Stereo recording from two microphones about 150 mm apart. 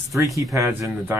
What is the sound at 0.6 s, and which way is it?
Speech, 15° right (ahead or behind).